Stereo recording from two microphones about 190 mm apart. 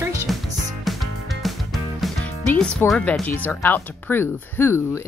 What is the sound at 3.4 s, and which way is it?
Speech, 10° left (ahead or behind).